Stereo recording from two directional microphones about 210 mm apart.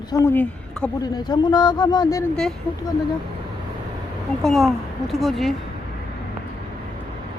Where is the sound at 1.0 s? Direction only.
20° left (ahead or behind).